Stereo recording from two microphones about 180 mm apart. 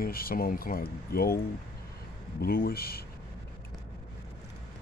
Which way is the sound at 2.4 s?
55° left (ahead or behind).